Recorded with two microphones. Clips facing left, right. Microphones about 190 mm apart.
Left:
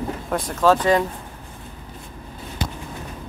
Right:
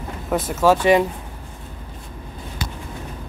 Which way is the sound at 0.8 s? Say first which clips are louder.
Right 3 dB; 20° right (ahead or behind).